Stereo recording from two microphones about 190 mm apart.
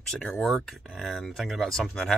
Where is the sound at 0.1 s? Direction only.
Centre (ahead or behind).